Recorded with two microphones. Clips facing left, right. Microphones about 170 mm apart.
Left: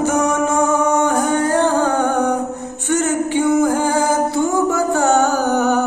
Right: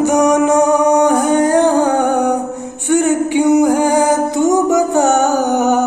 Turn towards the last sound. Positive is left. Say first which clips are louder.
# right 3 dB
turn(degrees=-15)  # may be behind; listen again after turning